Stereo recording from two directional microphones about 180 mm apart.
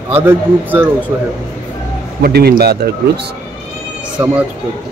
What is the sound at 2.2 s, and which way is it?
Speech, 60° right (ahead or behind).